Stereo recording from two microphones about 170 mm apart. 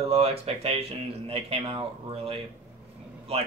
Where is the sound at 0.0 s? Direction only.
35° right (ahead or behind).